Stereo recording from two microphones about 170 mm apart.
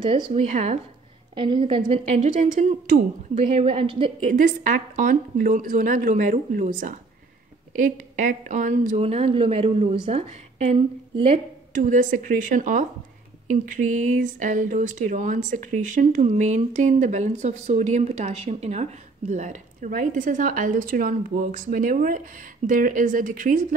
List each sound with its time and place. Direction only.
0.0 s speech: 30° right (ahead or behind)
1.3 s speech: 30° right (ahead or behind); by 2.8 s 45° right (ahead or behind)
3.3 s speech: 35° right (ahead or behind)
4.3 s speech: 50° right (ahead or behind)
8.2 s speech: 50° right (ahead or behind)
11.7 s speech: 50° right (ahead or behind)
14.2 s speech: 50° right (ahead or behind)